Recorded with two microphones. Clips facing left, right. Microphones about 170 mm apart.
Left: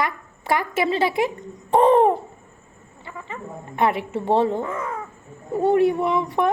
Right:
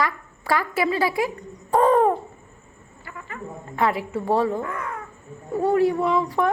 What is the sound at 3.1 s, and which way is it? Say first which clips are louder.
Speech: left 1 dB; 25° left (ahead or behind).